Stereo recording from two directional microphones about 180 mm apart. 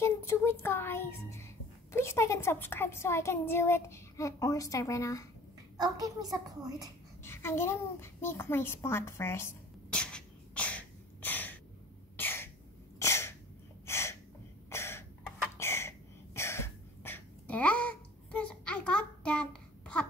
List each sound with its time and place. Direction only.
0.0 s a child's voice: 15° left (ahead or behind)
5.8 s a woman's voice: 20° right (ahead or behind)
7.2 s a sound: 15° left (ahead or behind)
12.2 s cough: 10° left (ahead or behind)
13.8 s gasp: 15° left (ahead or behind)
14.7 s cough: 15° left (ahead or behind)
15.5 s a sound: 15° left (ahead or behind)
16.3 s throat clearing: 15° left (ahead or behind)